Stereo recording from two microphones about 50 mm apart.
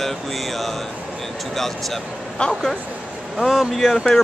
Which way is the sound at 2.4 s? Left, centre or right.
Centre.